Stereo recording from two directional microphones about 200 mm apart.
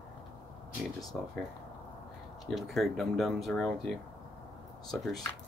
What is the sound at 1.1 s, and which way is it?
Speech, centre (ahead or behind).